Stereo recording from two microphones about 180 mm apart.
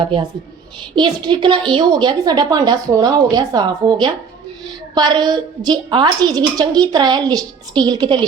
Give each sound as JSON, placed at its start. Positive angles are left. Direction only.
{"t": 0.0, "sound": "a woman's voice", "side_deg": -30}